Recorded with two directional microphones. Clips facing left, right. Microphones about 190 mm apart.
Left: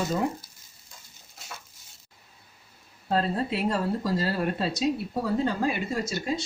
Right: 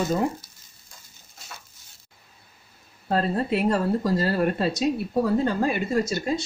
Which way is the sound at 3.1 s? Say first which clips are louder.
Right 3 dB; 55° right (ahead or behind).